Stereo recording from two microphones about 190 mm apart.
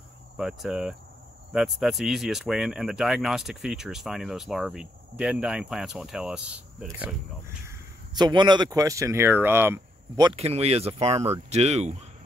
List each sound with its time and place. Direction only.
0.4 s a man's voice: centre (ahead or behind)
10.3 s speech: 30° right (ahead or behind)